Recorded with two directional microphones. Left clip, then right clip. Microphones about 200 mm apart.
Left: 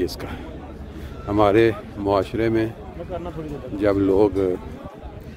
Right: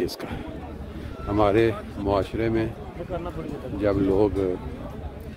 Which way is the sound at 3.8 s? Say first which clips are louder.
Left 4 dB; 30° left (ahead or behind).